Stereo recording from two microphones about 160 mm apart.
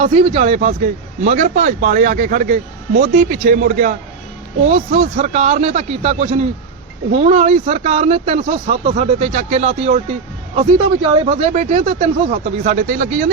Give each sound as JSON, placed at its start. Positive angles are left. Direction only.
{"t": 0.0, "sound": "a man's voice", "side_deg": -40}
{"t": 10.5, "sound": "a man's voice", "side_deg": -35}
{"t": 12.6, "sound": "speech", "side_deg": -55}